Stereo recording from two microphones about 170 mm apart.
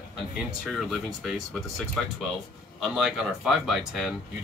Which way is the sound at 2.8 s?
5° right (ahead or behind).